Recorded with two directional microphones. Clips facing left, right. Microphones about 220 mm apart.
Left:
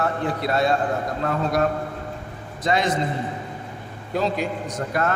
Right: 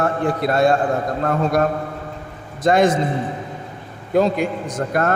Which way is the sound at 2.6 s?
50° right (ahead or behind).